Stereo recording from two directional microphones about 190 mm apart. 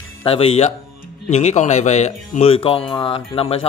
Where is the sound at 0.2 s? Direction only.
30° left (ahead or behind).